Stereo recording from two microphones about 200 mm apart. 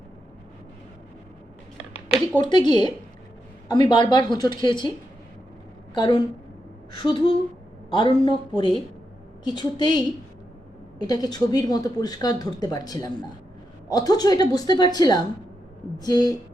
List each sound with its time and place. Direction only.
2.4 s speech: 25° left (ahead or behind)
5.9 s speech: 25° left (ahead or behind)
11.1 s speech: 20° left (ahead or behind)